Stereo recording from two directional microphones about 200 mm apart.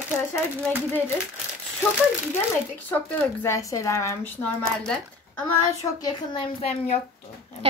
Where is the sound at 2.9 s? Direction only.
10° left (ahead or behind).